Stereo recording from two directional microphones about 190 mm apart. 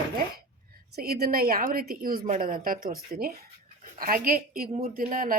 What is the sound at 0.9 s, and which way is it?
A woman's voice, 55° right (ahead or behind).